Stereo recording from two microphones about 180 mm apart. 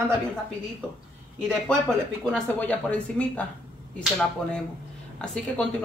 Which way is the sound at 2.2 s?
5° left (ahead or behind).